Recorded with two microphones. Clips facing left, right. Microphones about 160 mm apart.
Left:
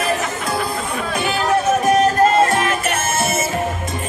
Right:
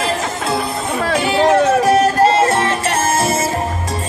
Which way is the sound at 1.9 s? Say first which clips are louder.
Right 2 dB; 25° right (ahead or behind).